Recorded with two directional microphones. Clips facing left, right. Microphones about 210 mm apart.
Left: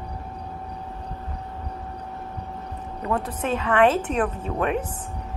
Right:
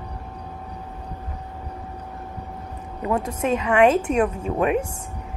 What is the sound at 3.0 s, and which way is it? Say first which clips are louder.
A woman's voice: right 3 dB; 10° right (ahead or behind).